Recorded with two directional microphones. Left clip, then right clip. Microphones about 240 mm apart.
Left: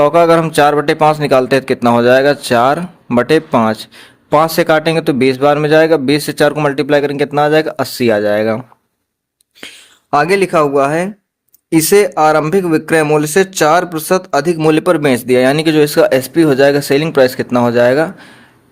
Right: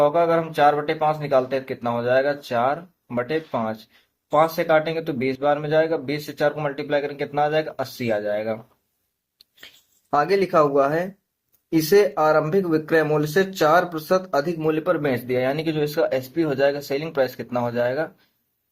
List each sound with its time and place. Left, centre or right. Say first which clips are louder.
0.0 s speech: left 10 dB; left
10.1 s speech: left 8 dB; left